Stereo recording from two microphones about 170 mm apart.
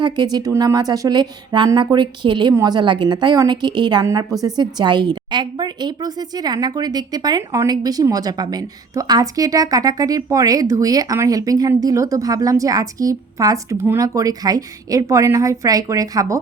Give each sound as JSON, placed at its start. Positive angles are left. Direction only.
{"t": 0.0, "sound": "a woman's voice", "side_deg": -25}